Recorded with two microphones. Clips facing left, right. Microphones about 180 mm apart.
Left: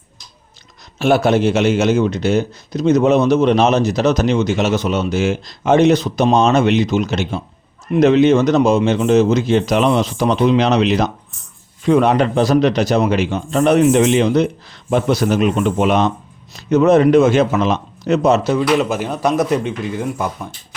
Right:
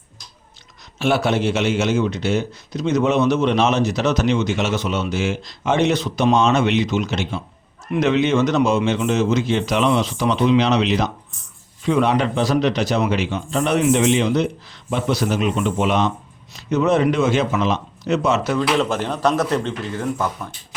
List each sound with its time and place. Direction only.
0.9 s a man's voice: 40° left (ahead or behind)
18.8 s speech: 5° left (ahead or behind)